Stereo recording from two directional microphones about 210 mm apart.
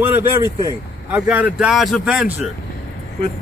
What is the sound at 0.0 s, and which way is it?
Speech, 10° right (ahead or behind).